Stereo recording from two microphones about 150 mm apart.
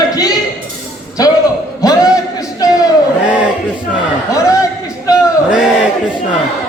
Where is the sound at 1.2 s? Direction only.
25° left (ahead or behind).